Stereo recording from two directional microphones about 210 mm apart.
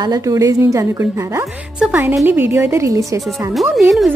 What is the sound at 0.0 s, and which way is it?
A woman's voice, 15° right (ahead or behind).